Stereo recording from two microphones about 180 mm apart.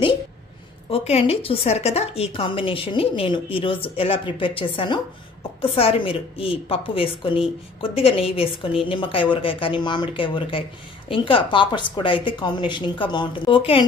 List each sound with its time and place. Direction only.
0.8 s a woman's voice: 35° left (ahead or behind)